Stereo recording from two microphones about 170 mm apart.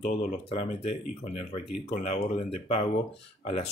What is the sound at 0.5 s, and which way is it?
Speech, 35° left (ahead or behind).